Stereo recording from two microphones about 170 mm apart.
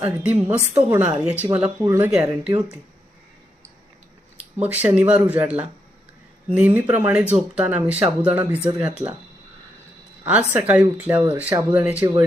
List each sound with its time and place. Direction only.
0.0 s speech: 10° right (ahead or behind)
1.8 s speech: 15° right (ahead or behind)
4.4 s speech: 10° right (ahead or behind)
10.2 s speech: 5° right (ahead or behind)